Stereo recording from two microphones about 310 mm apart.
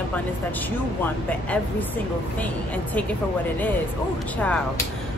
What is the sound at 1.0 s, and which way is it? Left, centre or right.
Speech, centre.